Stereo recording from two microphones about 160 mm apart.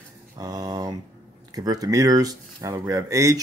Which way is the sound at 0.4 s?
25° right (ahead or behind).